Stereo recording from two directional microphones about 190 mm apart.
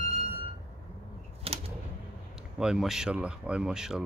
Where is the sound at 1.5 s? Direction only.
30° right (ahead or behind).